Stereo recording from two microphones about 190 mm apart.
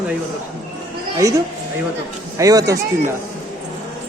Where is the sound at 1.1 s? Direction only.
15° right (ahead or behind).